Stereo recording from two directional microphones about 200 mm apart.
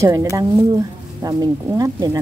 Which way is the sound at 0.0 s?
15° right (ahead or behind).